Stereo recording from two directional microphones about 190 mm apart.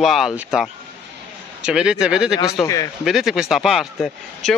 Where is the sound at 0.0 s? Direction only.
Centre (ahead or behind).